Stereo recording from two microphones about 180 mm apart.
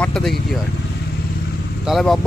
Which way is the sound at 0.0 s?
5° left (ahead or behind).